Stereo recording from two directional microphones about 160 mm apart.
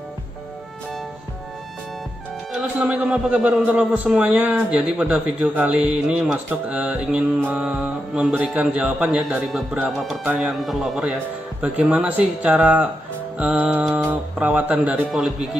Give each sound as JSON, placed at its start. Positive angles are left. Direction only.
{"t": 2.5, "sound": "a man's voice", "side_deg": -5}
{"t": 11.6, "sound": "mantra", "side_deg": -5}
{"t": 15.0, "sound": "a man's voice", "side_deg": 0}